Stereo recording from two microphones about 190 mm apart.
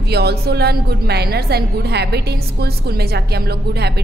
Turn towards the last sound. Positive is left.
turn(degrees=-60)  # may be behind; listen again after turning